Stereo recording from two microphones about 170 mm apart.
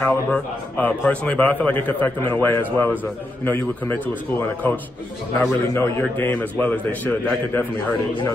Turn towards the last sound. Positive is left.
turn(degrees=10)  # may be behind; listen again after turning